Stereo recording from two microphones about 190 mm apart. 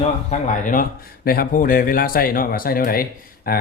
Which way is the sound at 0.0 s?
40° left (ahead or behind).